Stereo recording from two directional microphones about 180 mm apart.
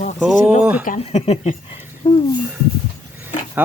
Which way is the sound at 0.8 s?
40° left (ahead or behind).